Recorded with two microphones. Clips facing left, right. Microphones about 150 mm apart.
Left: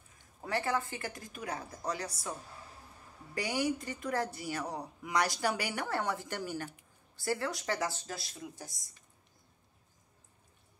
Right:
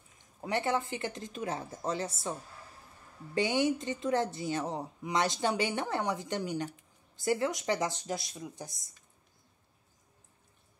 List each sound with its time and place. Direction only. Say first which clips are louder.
0.4 s a woman's voice: right 2 dB; 20° right (ahead or behind)
3.3 s a woman's voice: right 4 dB; 25° right (ahead or behind)